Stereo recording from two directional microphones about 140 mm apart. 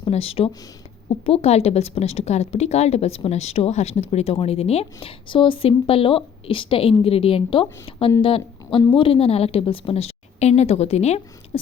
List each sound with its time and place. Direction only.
0.0 s a woman's voice: 45° left (ahead or behind)